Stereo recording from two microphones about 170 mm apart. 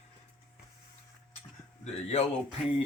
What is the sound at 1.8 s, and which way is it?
Speech, 40° left (ahead or behind).